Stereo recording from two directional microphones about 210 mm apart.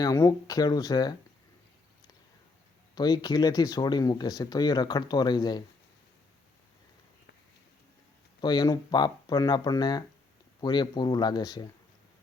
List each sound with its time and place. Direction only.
0.0 s speech: 15° left (ahead or behind)
2.9 s speech: 20° left (ahead or behind)
8.4 s speech: 20° left (ahead or behind)